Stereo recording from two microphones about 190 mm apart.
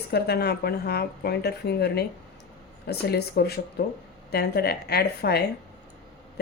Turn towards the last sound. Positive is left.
turn(degrees=55)  # may be behind; listen again after turning